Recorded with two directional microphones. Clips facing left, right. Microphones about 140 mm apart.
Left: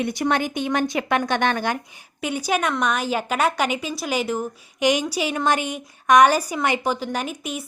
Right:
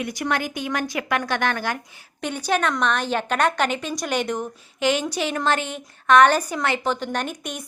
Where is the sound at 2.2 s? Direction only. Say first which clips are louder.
Even; 10° left (ahead or behind).